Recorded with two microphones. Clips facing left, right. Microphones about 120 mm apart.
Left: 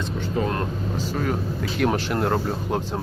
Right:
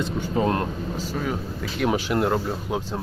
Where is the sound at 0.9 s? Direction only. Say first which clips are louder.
Left 3 dB; centre (ahead or behind).